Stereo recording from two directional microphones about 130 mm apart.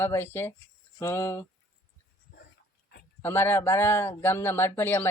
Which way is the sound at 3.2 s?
20° left (ahead or behind).